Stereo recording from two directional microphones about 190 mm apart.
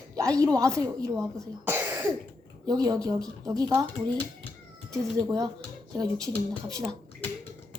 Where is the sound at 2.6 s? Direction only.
20° right (ahead or behind).